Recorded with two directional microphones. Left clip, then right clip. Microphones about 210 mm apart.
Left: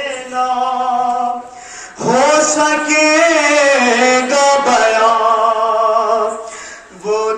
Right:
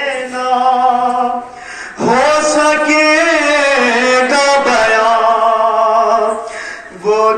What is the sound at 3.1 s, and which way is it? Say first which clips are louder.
Carnatic music: even; 15° right (ahead or behind).